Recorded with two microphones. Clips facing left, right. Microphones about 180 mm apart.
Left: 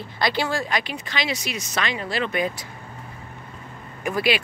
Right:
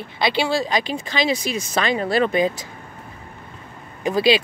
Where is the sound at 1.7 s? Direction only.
35° right (ahead or behind).